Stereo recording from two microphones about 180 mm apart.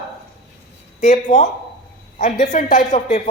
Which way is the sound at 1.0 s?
45° left (ahead or behind).